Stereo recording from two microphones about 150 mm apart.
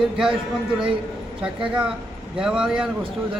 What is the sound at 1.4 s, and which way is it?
Speech, 5° right (ahead or behind).